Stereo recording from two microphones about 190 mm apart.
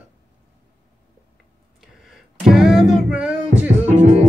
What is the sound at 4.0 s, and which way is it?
Music, 40° left (ahead or behind).